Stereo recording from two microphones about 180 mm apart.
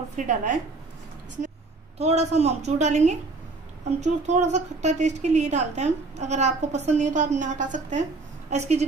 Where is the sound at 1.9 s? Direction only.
35° right (ahead or behind).